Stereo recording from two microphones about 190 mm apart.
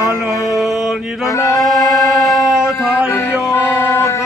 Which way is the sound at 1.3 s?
15° left (ahead or behind).